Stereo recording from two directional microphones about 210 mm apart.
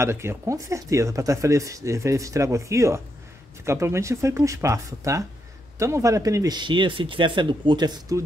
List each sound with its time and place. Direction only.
0.0 s speech: 10° right (ahead or behind)